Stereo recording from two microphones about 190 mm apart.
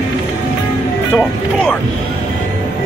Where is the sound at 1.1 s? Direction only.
5° left (ahead or behind).